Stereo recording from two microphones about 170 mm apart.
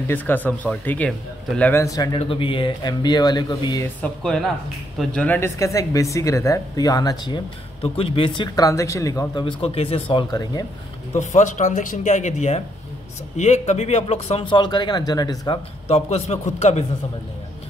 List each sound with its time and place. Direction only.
0.1 s speech: 10° left (ahead or behind)
2.1 s speech: 30° left (ahead or behind)
4.2 s speech: centre (ahead or behind); by 10.0 s 35° left (ahead or behind)
10.1 s speech: 25° left (ahead or behind)
11.1 s speech: 45° left (ahead or behind); by 15.6 s 25° left (ahead or behind)
15.9 s a man's voice: 40° left (ahead or behind)